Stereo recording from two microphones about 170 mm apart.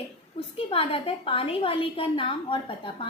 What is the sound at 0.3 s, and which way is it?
A woman's voice, 35° left (ahead or behind).